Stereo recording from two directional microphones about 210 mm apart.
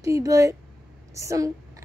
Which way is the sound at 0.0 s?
15° right (ahead or behind).